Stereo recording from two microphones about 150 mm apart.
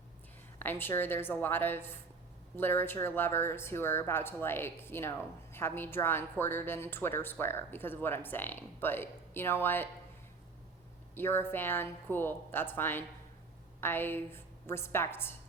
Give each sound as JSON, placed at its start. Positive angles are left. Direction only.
{"t": 0.6, "sound": "a woman's voice", "side_deg": 15}
{"t": 11.1, "sound": "a woman's voice", "side_deg": 15}